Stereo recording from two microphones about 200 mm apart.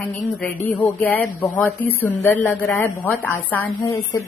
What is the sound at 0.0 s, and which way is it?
Speech, 5° left (ahead or behind).